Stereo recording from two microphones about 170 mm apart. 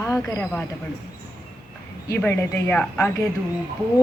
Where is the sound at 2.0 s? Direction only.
15° left (ahead or behind).